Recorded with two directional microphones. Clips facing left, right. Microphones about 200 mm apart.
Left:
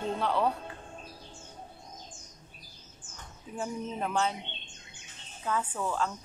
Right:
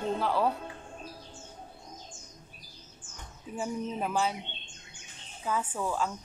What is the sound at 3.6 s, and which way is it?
Speech, 5° right (ahead or behind).